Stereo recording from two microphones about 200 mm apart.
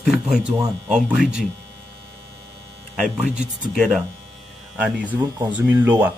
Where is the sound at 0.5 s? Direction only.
15° right (ahead or behind).